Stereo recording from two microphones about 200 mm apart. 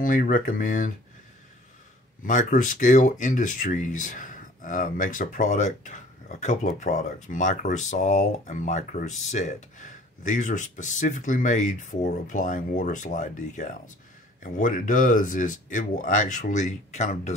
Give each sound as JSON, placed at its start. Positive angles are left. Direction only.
{"t": 0.0, "sound": "speech", "side_deg": 40}
{"t": 2.2, "sound": "speech", "side_deg": 40}